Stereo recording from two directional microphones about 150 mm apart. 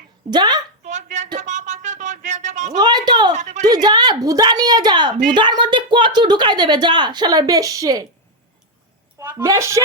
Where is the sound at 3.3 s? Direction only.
50° right (ahead or behind).